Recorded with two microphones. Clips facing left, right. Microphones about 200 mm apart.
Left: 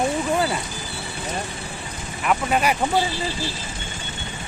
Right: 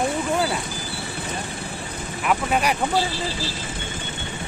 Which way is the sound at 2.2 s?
Centre (ahead or behind).